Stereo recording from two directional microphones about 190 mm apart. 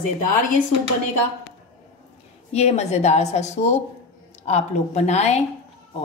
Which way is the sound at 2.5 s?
35° left (ahead or behind).